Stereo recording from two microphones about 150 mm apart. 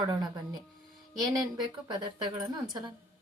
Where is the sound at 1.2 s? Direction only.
25° right (ahead or behind).